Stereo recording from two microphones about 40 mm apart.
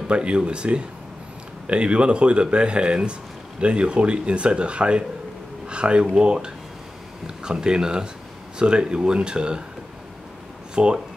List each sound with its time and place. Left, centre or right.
0.1 s speech: right
10.7 s speech: right